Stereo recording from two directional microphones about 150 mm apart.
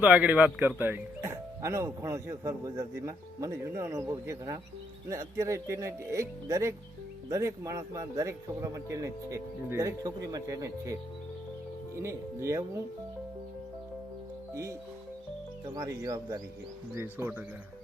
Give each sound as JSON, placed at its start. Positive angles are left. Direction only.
{"t": 0.0, "sound": "speech", "side_deg": -10}
{"t": 11.9, "sound": "speech", "side_deg": -20}
{"t": 14.5, "sound": "speech", "side_deg": -20}